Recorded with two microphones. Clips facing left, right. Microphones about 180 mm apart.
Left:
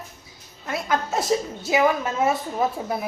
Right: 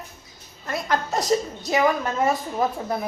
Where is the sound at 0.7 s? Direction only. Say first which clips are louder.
Even; 5° left (ahead or behind).